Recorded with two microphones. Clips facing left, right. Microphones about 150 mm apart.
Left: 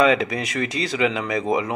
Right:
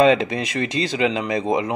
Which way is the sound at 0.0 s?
25° right (ahead or behind).